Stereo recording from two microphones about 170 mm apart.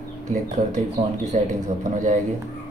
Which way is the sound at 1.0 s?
40° right (ahead or behind).